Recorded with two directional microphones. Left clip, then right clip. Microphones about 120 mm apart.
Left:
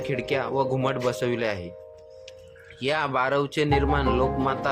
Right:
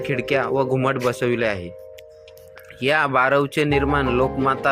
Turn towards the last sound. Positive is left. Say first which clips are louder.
# right 5 dB
turn(degrees=-30)  # may be behind; listen again after turning